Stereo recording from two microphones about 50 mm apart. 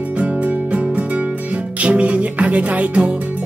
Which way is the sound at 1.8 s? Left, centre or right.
Right.